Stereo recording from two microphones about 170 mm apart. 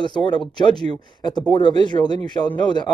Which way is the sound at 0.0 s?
25° left (ahead or behind).